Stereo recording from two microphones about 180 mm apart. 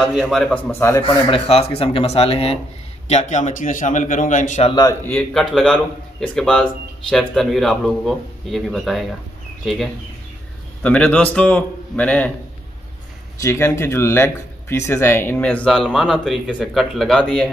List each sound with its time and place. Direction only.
0.0 s speech: centre (ahead or behind)
0.7 s speech: 15° left (ahead or behind)
1.0 s a man's voice: 30° left (ahead or behind)
5.0 s speech: 10° left (ahead or behind)
10.8 s speech: 5° left (ahead or behind)
13.4 s speech: 15° left (ahead or behind)